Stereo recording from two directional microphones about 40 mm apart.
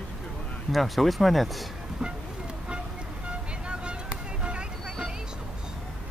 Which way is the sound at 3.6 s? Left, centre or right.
Right.